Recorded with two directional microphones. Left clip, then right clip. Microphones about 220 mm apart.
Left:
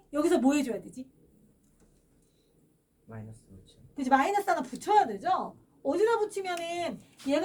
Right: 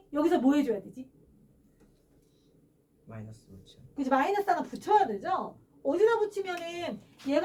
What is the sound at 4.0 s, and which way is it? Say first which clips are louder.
A woman's voice: left 2 dB; 30° left (ahead or behind).